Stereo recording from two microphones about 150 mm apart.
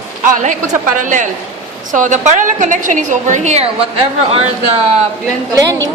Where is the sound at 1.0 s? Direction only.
55° right (ahead or behind).